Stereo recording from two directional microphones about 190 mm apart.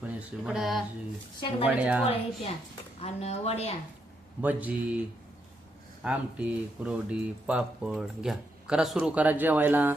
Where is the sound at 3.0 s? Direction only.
35° left (ahead or behind).